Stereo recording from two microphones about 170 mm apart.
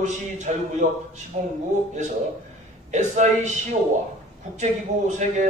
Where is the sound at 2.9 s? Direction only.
45° right (ahead or behind).